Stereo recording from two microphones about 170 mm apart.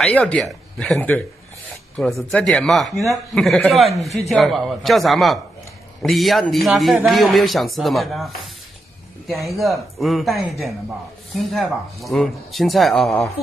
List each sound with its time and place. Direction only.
0.0 s a man's voice: 5° left (ahead or behind)
9.3 s a man's voice: centre (ahead or behind)